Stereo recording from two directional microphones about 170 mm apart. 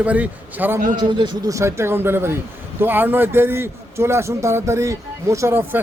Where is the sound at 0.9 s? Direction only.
25° right (ahead or behind).